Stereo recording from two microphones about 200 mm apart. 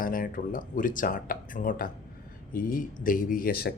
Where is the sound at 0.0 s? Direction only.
45° left (ahead or behind).